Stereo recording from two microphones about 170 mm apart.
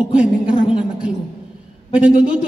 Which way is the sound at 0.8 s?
5° right (ahead or behind).